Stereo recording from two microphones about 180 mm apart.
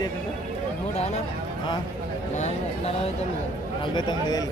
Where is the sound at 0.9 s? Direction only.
35° left (ahead or behind).